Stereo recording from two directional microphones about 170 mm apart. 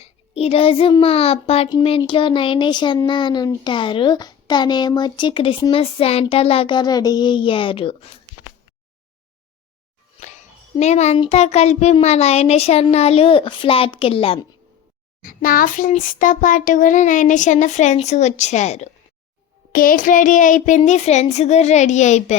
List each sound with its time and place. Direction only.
0.0 s a child's voice: 35° left (ahead or behind)
10.2 s a child's voice: 45° left (ahead or behind)
15.2 s child singing: 55° left (ahead or behind)
19.7 s child singing: 55° left (ahead or behind)